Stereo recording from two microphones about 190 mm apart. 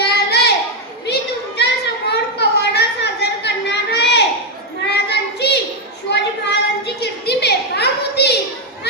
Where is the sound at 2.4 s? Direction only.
60° left (ahead or behind).